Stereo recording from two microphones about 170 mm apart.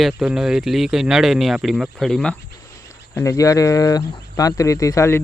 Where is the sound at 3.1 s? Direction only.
20° left (ahead or behind).